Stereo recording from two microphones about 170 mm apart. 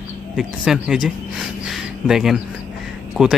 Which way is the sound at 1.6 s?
5° right (ahead or behind).